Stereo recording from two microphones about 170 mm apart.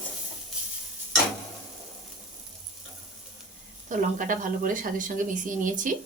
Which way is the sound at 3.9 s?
50° right (ahead or behind).